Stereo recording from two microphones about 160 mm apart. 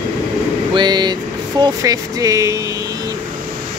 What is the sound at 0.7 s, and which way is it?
Speech, 25° right (ahead or behind).